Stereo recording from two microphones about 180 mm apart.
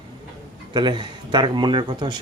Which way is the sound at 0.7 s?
25° right (ahead or behind).